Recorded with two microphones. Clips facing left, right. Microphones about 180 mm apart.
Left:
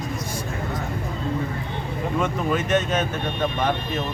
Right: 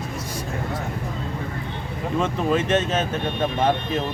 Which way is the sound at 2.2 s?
30° right (ahead or behind).